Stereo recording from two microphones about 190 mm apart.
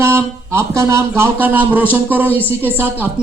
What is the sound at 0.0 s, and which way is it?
Speech, 15° right (ahead or behind).